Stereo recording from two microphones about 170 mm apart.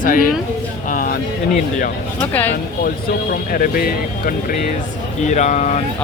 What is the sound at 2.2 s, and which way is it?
Speech, 10° left (ahead or behind).